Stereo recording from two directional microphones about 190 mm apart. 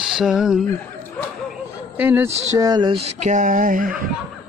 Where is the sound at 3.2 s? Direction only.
40° right (ahead or behind).